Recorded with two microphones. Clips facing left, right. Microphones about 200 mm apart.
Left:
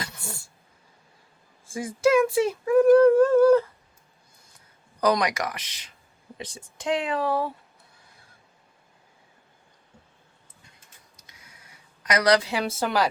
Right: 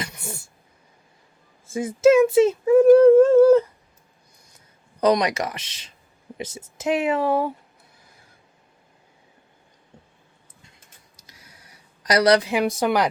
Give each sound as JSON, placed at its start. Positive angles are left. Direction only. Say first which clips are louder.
{"t": 0.0, "sound": "a sound", "louder": "right 3 dB", "side_deg": -20}
{"t": 1.6, "sound": "speech", "louder": "right 6 dB", "side_deg": -25}
{"t": 4.9, "sound": "speech", "louder": "right 4 dB", "side_deg": -25}
{"t": 12.0, "sound": "a woman's voice", "louder": "right 4 dB", "side_deg": -30}